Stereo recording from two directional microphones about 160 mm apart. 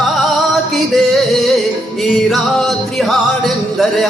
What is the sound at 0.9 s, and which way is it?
Music, centre (ahead or behind).